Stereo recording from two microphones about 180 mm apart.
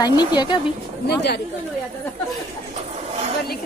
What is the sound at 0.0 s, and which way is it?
Speech, 25° left (ahead or behind).